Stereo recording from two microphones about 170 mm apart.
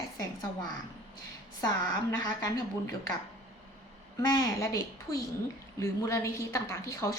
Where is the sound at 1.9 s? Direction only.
20° left (ahead or behind).